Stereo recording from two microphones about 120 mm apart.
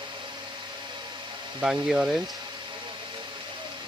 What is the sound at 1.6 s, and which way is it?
Speech, 5° right (ahead or behind).